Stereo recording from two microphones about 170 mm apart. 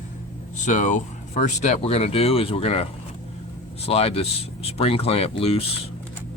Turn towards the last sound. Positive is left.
turn(degrees=35)  # may be behind; listen again after turning